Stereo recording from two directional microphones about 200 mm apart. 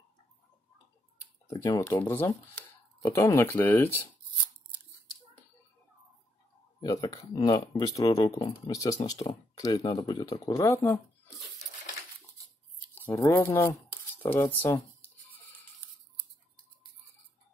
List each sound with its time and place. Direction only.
1.5 s speech: 15° left (ahead or behind)
6.8 s speech: 15° left (ahead or behind)
12.9 s speech: 10° left (ahead or behind)